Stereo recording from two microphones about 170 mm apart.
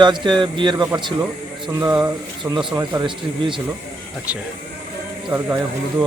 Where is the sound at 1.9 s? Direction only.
25° right (ahead or behind).